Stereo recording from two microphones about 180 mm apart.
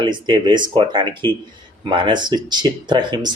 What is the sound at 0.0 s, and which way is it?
Speech, 25° right (ahead or behind).